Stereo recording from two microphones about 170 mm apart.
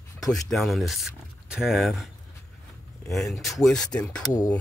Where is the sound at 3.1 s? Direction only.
Centre (ahead or behind).